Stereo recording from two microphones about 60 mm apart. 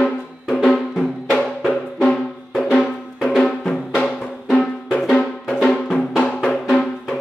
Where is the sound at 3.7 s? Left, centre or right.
Centre.